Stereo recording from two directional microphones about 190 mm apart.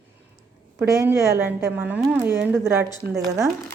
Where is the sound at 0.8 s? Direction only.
15° right (ahead or behind).